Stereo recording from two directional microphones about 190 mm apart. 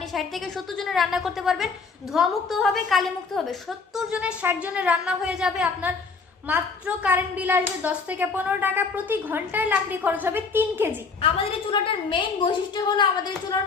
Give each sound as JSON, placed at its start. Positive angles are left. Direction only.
{"t": 0.1, "sound": "a woman's voice", "side_deg": 0}
{"t": 11.2, "sound": "a woman's voice", "side_deg": 30}